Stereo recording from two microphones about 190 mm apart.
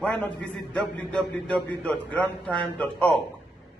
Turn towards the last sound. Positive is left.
turn(degrees=5)  # may be behind; listen again after turning